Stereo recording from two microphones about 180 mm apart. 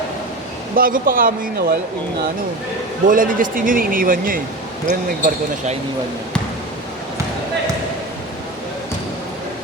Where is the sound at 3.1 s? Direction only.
50° right (ahead or behind).